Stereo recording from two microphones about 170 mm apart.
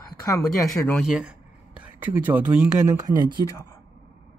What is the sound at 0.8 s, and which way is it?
Speech, centre (ahead or behind).